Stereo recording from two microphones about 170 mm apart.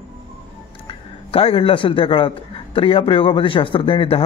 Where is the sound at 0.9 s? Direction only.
30° left (ahead or behind).